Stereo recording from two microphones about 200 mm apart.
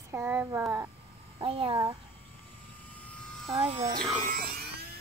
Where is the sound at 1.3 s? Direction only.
30° right (ahead or behind).